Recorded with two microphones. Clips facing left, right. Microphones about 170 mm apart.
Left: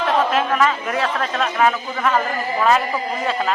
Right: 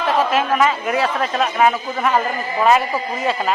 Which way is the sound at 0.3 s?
5° right (ahead or behind).